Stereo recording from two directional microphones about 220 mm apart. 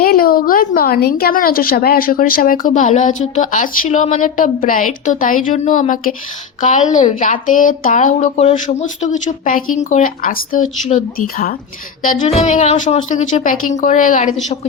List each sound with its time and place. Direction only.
0.0 s a woman's voice: 40° left (ahead or behind)